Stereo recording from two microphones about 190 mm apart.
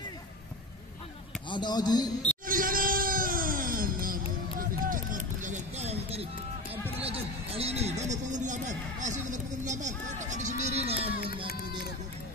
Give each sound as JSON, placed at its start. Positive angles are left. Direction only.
{"t": 1.5, "sound": "speech", "side_deg": 20}
{"t": 2.4, "sound": "music", "side_deg": -45}